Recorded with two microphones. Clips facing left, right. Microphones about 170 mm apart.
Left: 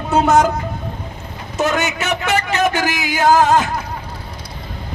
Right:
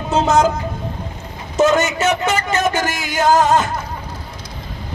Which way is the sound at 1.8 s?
60° left (ahead or behind).